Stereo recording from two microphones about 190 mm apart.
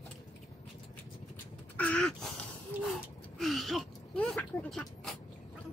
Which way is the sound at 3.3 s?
Centre (ahead or behind).